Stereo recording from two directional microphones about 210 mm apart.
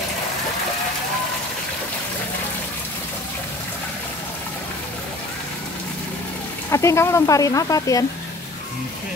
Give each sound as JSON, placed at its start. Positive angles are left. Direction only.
{"t": 6.7, "sound": "speech", "side_deg": 15}